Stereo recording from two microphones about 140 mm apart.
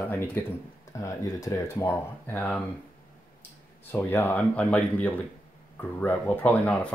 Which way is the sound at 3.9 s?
15° left (ahead or behind).